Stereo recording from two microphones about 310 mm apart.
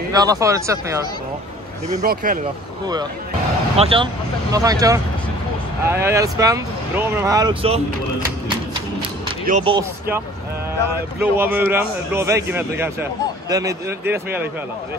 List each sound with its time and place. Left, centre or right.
0.1 s speech: centre
2.0 s speech: right
3.7 s speech: centre
9.5 s speech: centre